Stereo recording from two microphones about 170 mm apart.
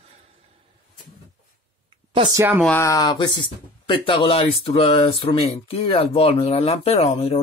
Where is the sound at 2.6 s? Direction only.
15° left (ahead or behind).